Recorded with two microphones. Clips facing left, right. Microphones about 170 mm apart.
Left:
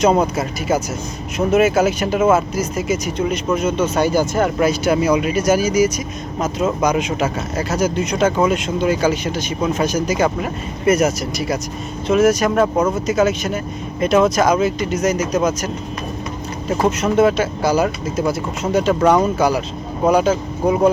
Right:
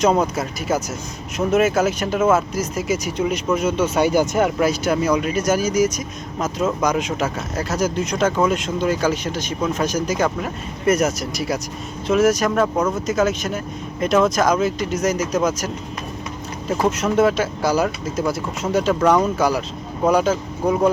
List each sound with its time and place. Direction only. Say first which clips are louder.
0.0 s speech: left 2 dB; centre (ahead or behind)
4.5 s speech: left 3 dB; centre (ahead or behind)
5.6 s speech: left 2 dB; 70° left (ahead or behind)
6.8 s speech: left 3 dB; 5° left (ahead or behind)
12.5 s speech: left 3 dB; 10° left (ahead or behind)
16.8 s speech: left 2 dB; centre (ahead or behind)